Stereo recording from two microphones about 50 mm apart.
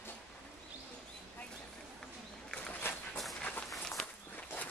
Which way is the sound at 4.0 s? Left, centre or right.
Left.